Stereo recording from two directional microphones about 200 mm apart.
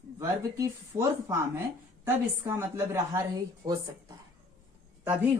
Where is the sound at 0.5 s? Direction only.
15° right (ahead or behind).